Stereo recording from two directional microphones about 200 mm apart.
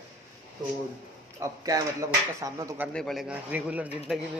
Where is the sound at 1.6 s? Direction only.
15° right (ahead or behind).